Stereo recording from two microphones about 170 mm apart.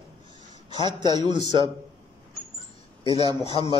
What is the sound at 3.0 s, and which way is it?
Speech, 25° right (ahead or behind).